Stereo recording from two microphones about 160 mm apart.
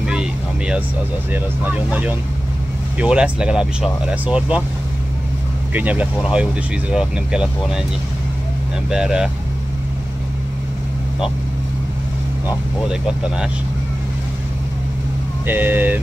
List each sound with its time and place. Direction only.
0.0 s vehicle: 5° right (ahead or behind)
1.3 s speech: 10° right (ahead or behind)
5.7 s speech: 10° right (ahead or behind)
8.9 s speech: 5° right (ahead or behind)
13.0 s speech: 5° right (ahead or behind)
15.4 s speech: 10° right (ahead or behind)